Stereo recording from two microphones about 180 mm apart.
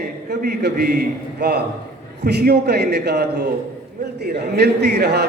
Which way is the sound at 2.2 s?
65° right (ahead or behind).